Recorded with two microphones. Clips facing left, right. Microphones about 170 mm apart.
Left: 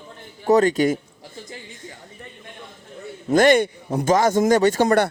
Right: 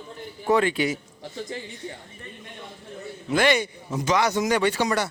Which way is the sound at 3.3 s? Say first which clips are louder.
Left 6 dB; 45° left (ahead or behind).